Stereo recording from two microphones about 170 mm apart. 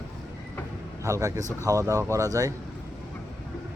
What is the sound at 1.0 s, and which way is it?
A man's voice, 15° right (ahead or behind).